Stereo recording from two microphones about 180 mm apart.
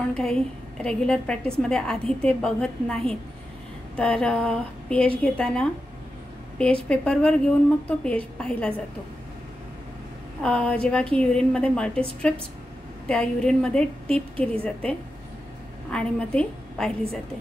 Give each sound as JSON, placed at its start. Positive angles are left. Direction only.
{"t": 0.1, "sound": "a woman's voice", "side_deg": 5}
{"t": 10.4, "sound": "a woman's voice", "side_deg": 5}
{"t": 13.1, "sound": "a woman's voice", "side_deg": 5}